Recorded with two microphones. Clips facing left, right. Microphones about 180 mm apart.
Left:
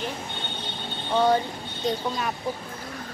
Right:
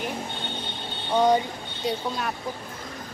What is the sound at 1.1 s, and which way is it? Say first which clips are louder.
Speech: right 1 dB; 15° right (ahead or behind).